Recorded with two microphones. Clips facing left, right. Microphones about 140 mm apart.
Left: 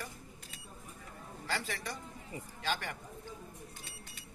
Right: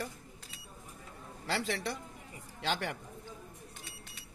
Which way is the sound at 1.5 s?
80° right.